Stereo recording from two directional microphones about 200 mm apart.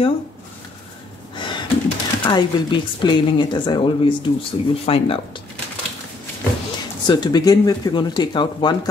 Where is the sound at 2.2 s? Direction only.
25° left (ahead or behind).